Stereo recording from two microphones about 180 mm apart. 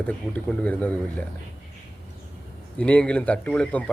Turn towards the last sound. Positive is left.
turn(degrees=5)  # may be behind; listen again after turning